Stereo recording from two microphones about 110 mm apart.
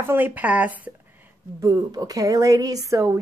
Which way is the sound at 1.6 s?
40° right (ahead or behind).